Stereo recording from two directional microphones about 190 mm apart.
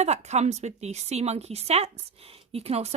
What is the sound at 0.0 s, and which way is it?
A woman's voice, 35° right (ahead or behind).